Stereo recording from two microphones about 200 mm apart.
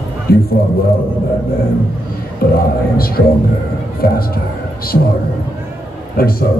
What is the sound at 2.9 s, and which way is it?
A man's voice, 50° left (ahead or behind).